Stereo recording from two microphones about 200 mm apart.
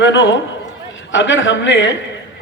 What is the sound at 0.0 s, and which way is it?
A man's voice, 65° left (ahead or behind).